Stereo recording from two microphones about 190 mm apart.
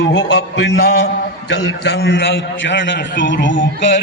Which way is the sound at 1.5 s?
65° left (ahead or behind).